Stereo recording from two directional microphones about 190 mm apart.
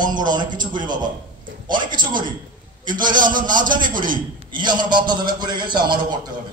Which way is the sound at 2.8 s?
45° right (ahead or behind).